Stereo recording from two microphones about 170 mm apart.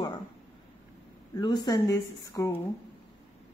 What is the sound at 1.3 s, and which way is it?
Speech, 25° left (ahead or behind).